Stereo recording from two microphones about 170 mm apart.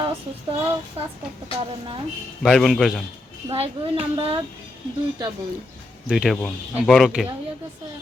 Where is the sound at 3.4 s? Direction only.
35° right (ahead or behind).